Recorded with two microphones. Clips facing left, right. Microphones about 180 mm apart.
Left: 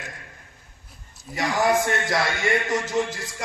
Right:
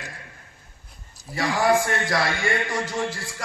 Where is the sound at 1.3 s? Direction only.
20° left (ahead or behind).